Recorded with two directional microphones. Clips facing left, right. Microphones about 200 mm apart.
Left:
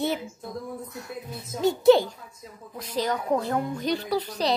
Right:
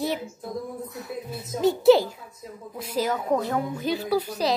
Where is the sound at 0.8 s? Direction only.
Centre (ahead or behind).